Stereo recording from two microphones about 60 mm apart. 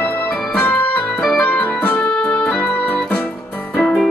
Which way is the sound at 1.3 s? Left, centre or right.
Left.